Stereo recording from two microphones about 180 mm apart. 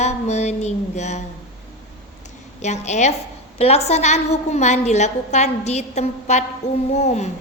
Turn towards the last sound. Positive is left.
turn(degrees=40)  # may be behind; listen again after turning